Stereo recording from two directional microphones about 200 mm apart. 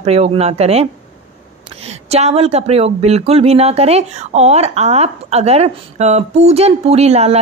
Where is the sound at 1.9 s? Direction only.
30° right (ahead or behind).